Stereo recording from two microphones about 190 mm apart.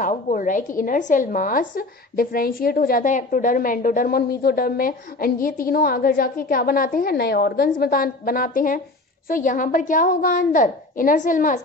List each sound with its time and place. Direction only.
0.0 s a woman's voice: 45° left (ahead or behind)